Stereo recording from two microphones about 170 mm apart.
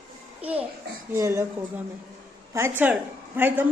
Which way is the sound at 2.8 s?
10° right (ahead or behind).